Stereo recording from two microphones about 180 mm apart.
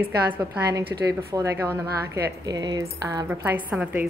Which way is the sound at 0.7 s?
20° right (ahead or behind).